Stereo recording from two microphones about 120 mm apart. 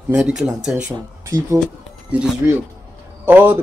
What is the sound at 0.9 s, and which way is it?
Speech, 30° right (ahead or behind).